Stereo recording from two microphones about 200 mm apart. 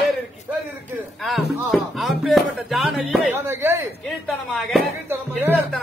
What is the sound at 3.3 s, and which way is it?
Speech, 15° right (ahead or behind).